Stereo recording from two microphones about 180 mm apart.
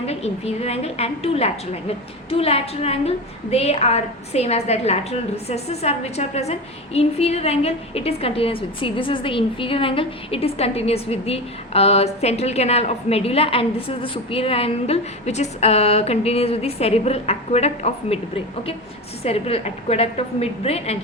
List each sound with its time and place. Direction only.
0.0 s a woman's voice: 35° left (ahead or behind)
19.2 s a woman's voice: 35° left (ahead or behind)